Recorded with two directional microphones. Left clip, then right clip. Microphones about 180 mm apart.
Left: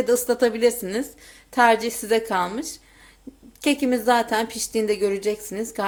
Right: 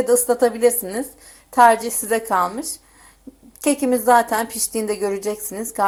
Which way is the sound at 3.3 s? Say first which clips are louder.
Right 1 dB; 10° right (ahead or behind).